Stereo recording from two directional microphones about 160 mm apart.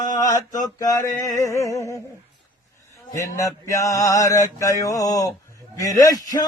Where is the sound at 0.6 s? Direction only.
20° left (ahead or behind).